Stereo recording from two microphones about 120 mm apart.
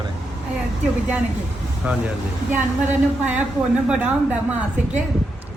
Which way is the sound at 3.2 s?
10° right (ahead or behind).